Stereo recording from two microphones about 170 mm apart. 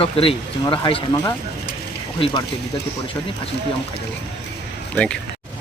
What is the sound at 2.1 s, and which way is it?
Speech, 30° left (ahead or behind).